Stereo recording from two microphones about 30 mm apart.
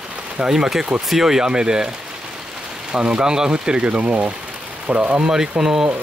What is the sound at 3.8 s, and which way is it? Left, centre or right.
Speech, right.